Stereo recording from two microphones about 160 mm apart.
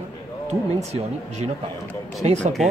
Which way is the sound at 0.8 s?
45° right (ahead or behind).